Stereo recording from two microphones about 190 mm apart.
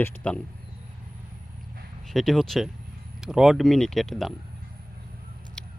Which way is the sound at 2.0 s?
Centre (ahead or behind).